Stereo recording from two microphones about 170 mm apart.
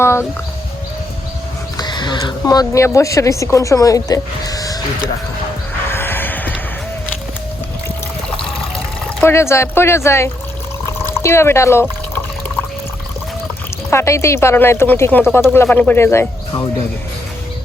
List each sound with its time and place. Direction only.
0.0 s speech: 15° left (ahead or behind)
1.7 s speech: 25° left (ahead or behind)
5.9 s music: 10° left (ahead or behind)
9.2 s speech: 15° left (ahead or behind)
13.9 s speech: 15° left (ahead or behind)